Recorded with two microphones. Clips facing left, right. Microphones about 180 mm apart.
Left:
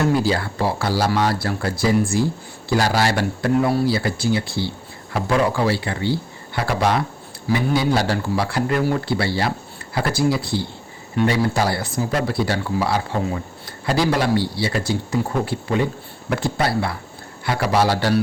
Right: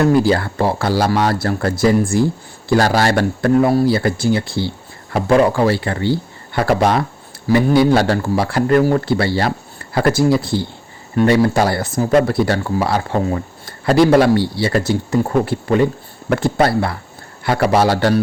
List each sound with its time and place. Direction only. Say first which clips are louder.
0.3 s a man's voice: right 5 dB; 55° right (ahead or behind)